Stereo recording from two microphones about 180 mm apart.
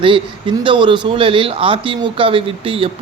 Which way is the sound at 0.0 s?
30° right (ahead or behind).